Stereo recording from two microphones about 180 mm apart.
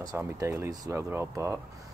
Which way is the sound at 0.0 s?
20° right (ahead or behind).